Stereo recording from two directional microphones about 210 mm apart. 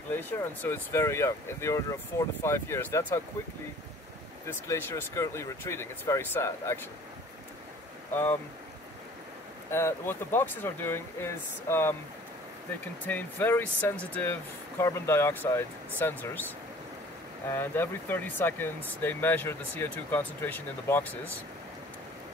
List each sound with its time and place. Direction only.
0.1 s speech: 10° left (ahead or behind)
4.5 s speech: 10° left (ahead or behind)
8.1 s speech: 10° left (ahead or behind)
9.7 s speech: 10° left (ahead or behind)
13.0 s speech: 10° left (ahead or behind)
17.5 s speech: 10° left (ahead or behind)